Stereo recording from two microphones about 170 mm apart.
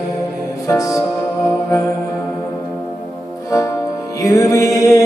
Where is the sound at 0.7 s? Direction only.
20° left (ahead or behind).